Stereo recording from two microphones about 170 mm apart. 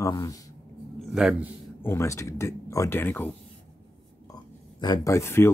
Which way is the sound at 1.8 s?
15° left (ahead or behind).